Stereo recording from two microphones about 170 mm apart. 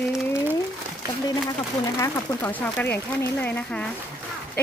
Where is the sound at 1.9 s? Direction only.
15° left (ahead or behind).